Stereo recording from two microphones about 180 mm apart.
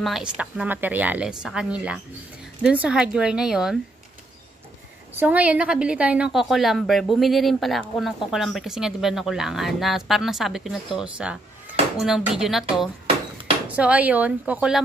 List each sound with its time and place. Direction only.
0.0 s speech: 5° right (ahead or behind)
5.1 s speech: 10° right (ahead or behind)